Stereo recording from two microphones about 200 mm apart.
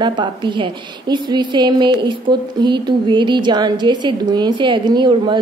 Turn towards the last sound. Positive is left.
turn(degrees=-25)  # may be behind; listen again after turning